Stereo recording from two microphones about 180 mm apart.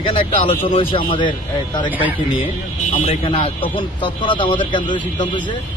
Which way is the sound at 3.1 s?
30° left (ahead or behind).